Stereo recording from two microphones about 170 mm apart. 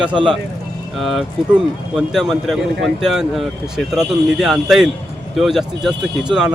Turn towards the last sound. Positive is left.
turn(degrees=-5)  # may be behind; listen again after turning